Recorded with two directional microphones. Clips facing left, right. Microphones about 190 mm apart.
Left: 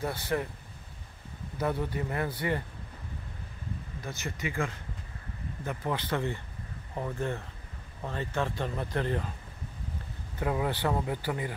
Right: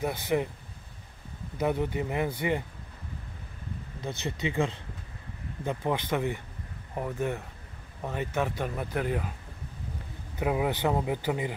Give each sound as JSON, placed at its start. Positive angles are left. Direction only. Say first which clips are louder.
{"t": 0.0, "sound": "speech", "louder": "right 3 dB", "side_deg": -15}
{"t": 1.6, "sound": "speech", "louder": "right 3 dB", "side_deg": -20}
{"t": 4.1, "sound": "speech", "louder": "right 4 dB", "side_deg": -20}
{"t": 10.4, "sound": "speech", "louder": "right 3 dB", "side_deg": -15}